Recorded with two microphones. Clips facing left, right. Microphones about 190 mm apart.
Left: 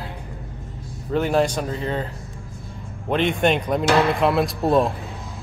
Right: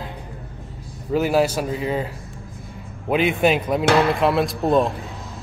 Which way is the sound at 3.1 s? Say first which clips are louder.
Right 1 dB; 5° right (ahead or behind).